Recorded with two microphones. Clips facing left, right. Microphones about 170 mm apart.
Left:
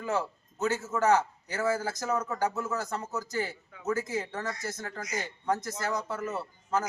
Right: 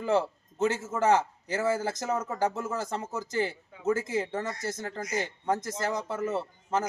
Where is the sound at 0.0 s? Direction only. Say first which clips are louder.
Right 5 dB; 30° right (ahead or behind).